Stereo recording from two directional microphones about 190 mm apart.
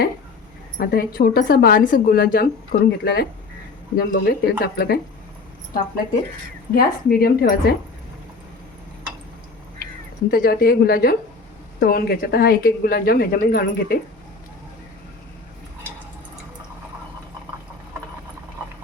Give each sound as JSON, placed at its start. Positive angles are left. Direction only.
{"t": 0.8, "sound": "a woman's voice", "side_deg": 50}
{"t": 6.7, "sound": "a woman's voice", "side_deg": 50}
{"t": 10.3, "sound": "a woman's voice", "side_deg": 50}